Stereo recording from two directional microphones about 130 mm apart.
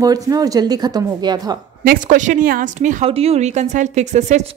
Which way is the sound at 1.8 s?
80° right.